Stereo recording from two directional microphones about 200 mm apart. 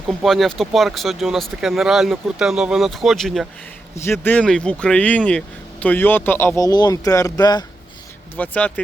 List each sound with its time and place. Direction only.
0.1 s speech: centre (ahead or behind)
3.9 s speech: 15° left (ahead or behind)
8.4 s speech: 5° left (ahead or behind)